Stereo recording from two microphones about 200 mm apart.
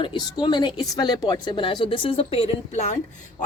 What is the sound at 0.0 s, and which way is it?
A woman's voice, 20° left (ahead or behind).